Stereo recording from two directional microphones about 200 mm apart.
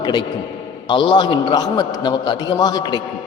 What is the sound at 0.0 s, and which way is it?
A man's voice, 20° left (ahead or behind).